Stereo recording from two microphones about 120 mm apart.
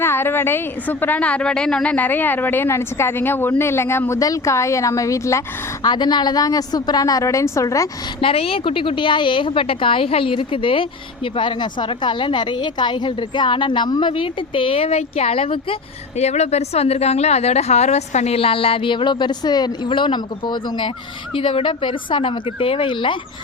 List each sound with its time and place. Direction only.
0.0 s a woman's voice: 20° left (ahead or behind)
5.8 s a woman's voice: 35° left (ahead or behind)
8.2 s speech: 50° left (ahead or behind)